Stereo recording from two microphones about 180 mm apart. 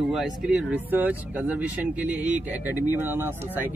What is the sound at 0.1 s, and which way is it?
A man's voice, 5° right (ahead or behind).